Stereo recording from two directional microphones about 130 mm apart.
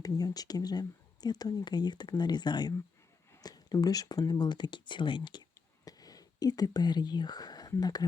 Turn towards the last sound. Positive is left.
turn(degrees=30)  # may be behind; listen again after turning